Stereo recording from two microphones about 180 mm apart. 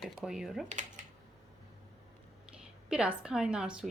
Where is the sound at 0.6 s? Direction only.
45° right (ahead or behind).